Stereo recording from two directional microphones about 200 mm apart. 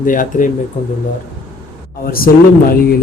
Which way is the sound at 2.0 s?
45° left (ahead or behind).